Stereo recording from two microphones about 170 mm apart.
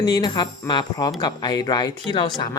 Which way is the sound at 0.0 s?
25° left (ahead or behind).